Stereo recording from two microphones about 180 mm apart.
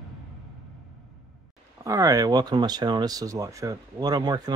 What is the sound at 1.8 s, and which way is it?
Speech, 20° right (ahead or behind).